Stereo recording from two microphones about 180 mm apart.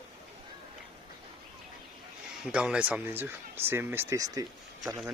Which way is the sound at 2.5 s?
5° right (ahead or behind).